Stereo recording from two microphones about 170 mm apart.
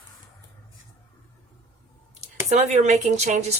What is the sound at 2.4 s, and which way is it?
Speech, 40° right (ahead or behind).